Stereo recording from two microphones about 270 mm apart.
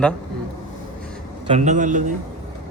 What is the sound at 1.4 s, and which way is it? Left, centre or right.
Speech, right.